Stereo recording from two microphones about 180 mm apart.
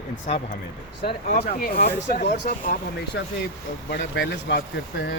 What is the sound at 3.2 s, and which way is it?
Speech, 75° left (ahead or behind).